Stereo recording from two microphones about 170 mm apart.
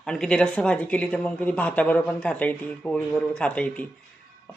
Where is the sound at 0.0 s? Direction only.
5° left (ahead or behind).